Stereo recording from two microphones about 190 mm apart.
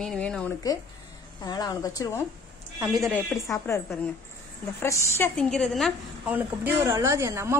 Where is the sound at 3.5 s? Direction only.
15° left (ahead or behind).